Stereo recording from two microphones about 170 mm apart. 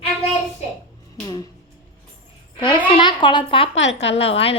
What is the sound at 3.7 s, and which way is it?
Speech, 90° left.